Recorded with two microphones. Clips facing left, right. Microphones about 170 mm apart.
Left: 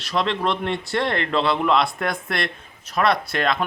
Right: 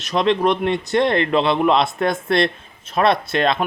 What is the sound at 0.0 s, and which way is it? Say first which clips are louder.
Speech: right 5 dB; 20° right (ahead or behind).